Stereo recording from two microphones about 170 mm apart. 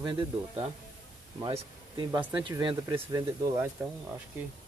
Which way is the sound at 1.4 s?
30° right (ahead or behind).